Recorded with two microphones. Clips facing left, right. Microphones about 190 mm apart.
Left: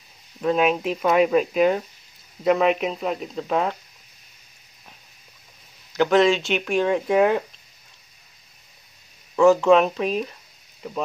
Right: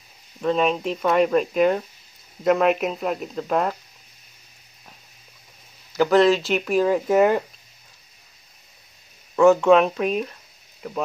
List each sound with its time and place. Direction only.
0.4 s speech: 5° left (ahead or behind)
5.9 s speech: centre (ahead or behind)
9.3 s speech: centre (ahead or behind)